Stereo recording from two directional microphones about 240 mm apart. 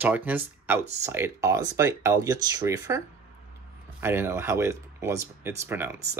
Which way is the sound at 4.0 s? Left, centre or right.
Centre.